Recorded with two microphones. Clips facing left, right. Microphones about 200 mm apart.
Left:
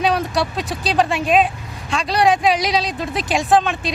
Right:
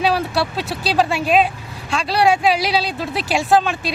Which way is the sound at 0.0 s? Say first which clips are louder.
Even; 5° right (ahead or behind).